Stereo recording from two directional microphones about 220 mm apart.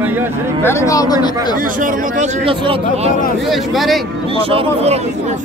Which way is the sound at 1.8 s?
30° right (ahead or behind).